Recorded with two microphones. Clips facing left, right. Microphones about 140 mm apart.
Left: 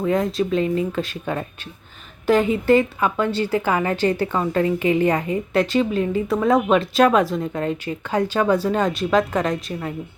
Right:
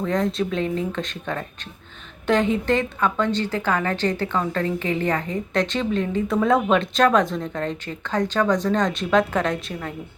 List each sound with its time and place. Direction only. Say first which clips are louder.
0.0 s a woman's voice: left 2 dB; 5° left (ahead or behind)